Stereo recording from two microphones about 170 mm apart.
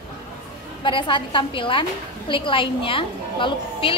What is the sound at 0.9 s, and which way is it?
A woman's voice, 30° left (ahead or behind).